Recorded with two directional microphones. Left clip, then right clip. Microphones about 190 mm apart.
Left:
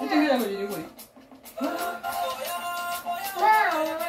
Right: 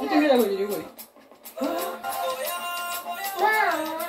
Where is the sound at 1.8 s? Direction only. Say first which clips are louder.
Even; 45° right (ahead or behind).